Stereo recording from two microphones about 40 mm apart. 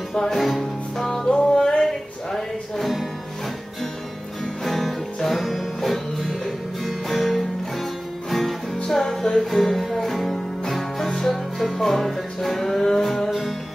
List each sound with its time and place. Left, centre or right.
0.1 s music: centre
0.4 s music: centre
4.6 s music: centre